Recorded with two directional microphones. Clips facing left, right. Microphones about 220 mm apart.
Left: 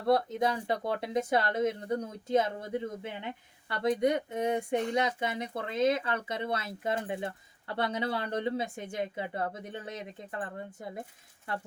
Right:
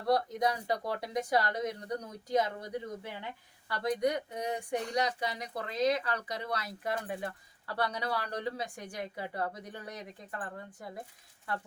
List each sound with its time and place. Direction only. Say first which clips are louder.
0.1 s speech: left 2 dB; 25° left (ahead or behind)